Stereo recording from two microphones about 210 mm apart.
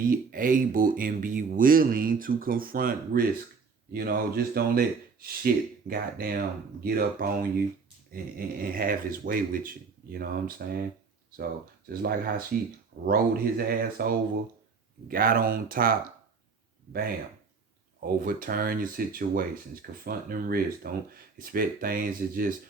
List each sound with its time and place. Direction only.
0.0 s speech: 45° right (ahead or behind)
11.9 s speech: 45° right (ahead or behind)
18.0 s speech: 40° right (ahead or behind)